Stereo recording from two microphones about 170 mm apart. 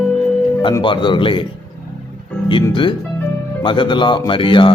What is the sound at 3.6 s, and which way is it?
Speech, 30° left (ahead or behind).